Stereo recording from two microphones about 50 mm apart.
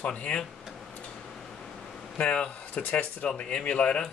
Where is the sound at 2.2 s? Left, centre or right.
Left.